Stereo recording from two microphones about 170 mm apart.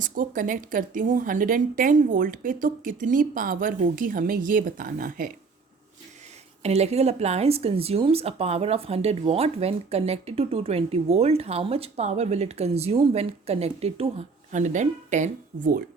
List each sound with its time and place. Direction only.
0.0 s a woman's voice: 50° right (ahead or behind)
6.6 s speech: 40° right (ahead or behind)